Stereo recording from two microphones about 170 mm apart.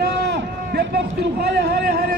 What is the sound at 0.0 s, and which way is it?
Run, 70° right (ahead or behind).